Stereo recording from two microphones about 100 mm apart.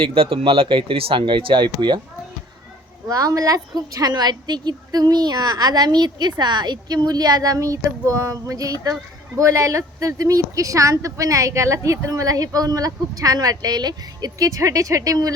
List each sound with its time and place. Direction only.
0.0 s speech: 65° right (ahead or behind)
3.1 s speech: 35° right (ahead or behind)